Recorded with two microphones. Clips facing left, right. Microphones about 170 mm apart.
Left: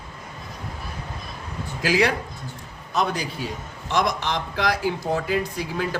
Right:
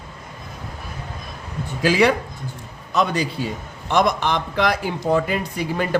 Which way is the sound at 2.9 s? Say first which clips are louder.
Right 4 dB; 70° right (ahead or behind).